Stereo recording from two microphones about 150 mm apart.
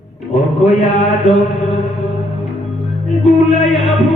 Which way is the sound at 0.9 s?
50° left (ahead or behind).